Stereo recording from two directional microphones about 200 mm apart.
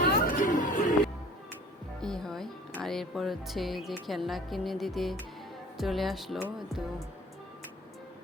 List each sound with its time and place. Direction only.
0.3 s chatter: 40° left (ahead or behind)
2.0 s speech: centre (ahead or behind)